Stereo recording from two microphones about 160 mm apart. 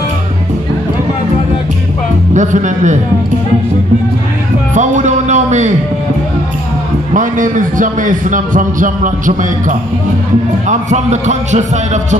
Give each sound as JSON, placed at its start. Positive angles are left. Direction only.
{"t": 2.3, "sound": "a man's voice", "side_deg": -50}
{"t": 4.7, "sound": "speech", "side_deg": -50}
{"t": 7.2, "sound": "a man's voice", "side_deg": -55}